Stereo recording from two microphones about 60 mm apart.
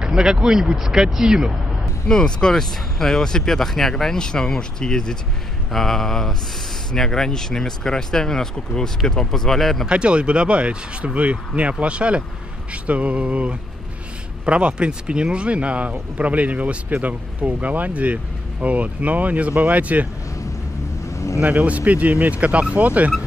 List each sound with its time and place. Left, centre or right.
0.0 s speech: centre
2.0 s speech: centre
5.7 s mantra: centre
6.9 s speech: centre
9.8 s speech: centre
21.4 s speech: right